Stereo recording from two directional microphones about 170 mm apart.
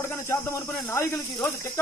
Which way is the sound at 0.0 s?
15° left (ahead or behind).